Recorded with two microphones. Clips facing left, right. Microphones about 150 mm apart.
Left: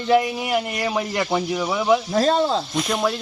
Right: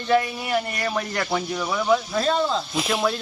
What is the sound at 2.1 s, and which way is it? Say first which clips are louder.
Speech: left 4 dB; 35° left (ahead or behind).